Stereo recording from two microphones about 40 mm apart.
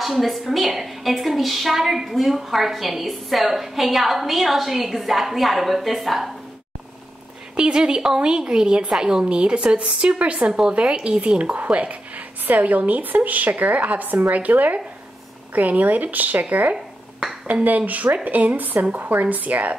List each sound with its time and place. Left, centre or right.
0.0 s a woman's voice: centre
7.5 s a woman's voice: right
9.2 s speech: right